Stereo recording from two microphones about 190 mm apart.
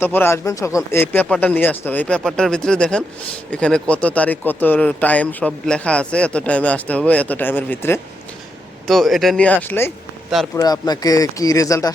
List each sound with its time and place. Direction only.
0.0 s speech: 10° left (ahead or behind)
8.9 s speech: centre (ahead or behind); by 11.9 s 15° left (ahead or behind)